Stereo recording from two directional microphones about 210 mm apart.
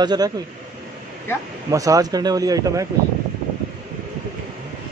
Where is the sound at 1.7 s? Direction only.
15° right (ahead or behind).